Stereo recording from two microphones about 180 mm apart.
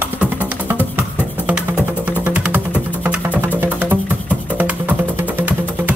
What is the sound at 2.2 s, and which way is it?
Music, 10° right (ahead or behind).